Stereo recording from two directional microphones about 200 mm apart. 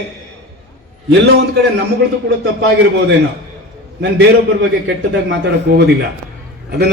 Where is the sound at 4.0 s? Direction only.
60° right (ahead or behind).